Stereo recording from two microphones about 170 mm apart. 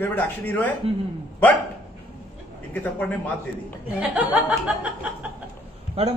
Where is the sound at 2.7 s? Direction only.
10° left (ahead or behind).